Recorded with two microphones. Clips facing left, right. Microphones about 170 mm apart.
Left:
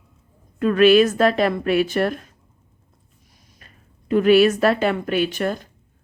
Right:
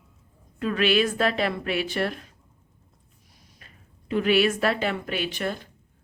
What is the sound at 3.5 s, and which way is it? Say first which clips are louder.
A woman's voice: left 3 dB; 45° left (ahead or behind).